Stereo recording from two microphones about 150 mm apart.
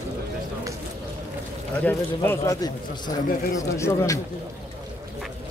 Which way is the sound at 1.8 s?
15° left (ahead or behind).